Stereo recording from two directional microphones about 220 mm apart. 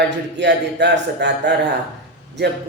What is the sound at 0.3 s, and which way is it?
Speech, 50° right (ahead or behind).